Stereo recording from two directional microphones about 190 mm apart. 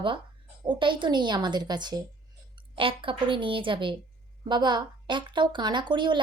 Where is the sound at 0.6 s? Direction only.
25° right (ahead or behind).